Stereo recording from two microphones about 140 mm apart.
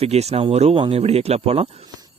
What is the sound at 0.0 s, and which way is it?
Speech, 50° right (ahead or behind).